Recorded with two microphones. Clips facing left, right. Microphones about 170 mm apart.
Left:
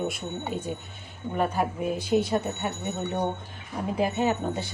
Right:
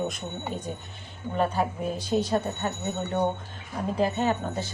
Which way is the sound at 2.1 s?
5° left (ahead or behind).